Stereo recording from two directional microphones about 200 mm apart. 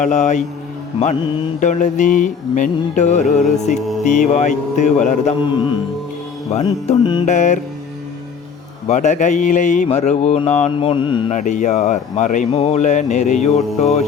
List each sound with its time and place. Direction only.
0.0 s music: 35° left (ahead or behind)
1.6 s music: 40° left (ahead or behind)
5.4 s music: 25° left (ahead or behind)
6.8 s music: 30° left (ahead or behind)
7.3 s music: 35° left (ahead or behind)
8.9 s music: 35° left (ahead or behind)
11.3 s music: 35° left (ahead or behind)